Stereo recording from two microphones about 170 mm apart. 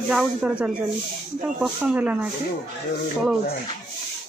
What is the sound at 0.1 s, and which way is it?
Speech, 5° right (ahead or behind).